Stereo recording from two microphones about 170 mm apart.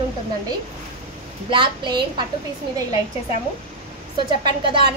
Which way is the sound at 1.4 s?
30° right (ahead or behind).